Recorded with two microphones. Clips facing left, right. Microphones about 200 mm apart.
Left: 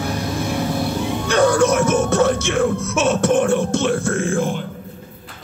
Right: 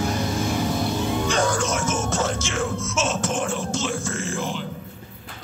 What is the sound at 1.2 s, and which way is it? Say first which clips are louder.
Music: left 13 dB; 60° left (ahead or behind).